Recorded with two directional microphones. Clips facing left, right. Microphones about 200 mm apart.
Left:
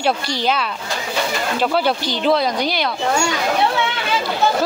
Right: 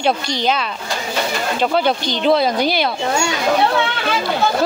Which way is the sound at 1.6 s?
5° left (ahead or behind).